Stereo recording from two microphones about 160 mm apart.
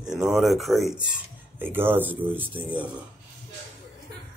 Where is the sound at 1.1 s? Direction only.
10° right (ahead or behind).